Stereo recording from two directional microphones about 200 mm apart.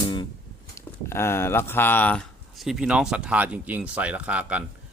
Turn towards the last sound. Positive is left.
turn(degrees=-5)  # may be behind; listen again after turning